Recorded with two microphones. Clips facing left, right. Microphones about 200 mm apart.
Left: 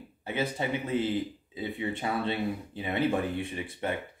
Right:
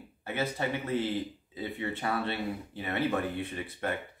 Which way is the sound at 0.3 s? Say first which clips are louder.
Left 1 dB; 15° left (ahead or behind).